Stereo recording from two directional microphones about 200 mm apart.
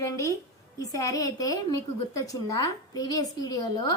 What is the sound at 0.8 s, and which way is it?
A woman's voice, 15° left (ahead or behind).